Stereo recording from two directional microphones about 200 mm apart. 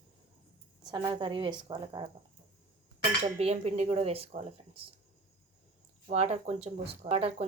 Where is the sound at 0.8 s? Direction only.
20° right (ahead or behind).